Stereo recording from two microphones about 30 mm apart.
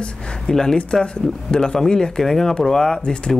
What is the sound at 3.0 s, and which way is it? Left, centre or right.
Speech, left.